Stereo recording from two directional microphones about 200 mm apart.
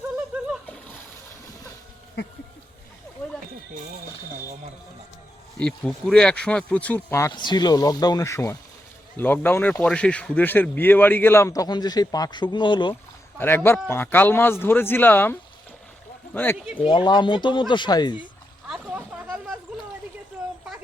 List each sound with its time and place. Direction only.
5.5 s speech: 5° left (ahead or behind); by 12.9 s 25° left (ahead or behind)
13.4 s speech: 10° left (ahead or behind)
16.8 s speech: 20° left (ahead or behind)
18.7 s a sound: 5° right (ahead or behind)